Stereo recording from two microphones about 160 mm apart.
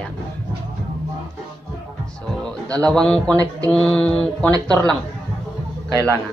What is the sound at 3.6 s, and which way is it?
Music, 5° left (ahead or behind).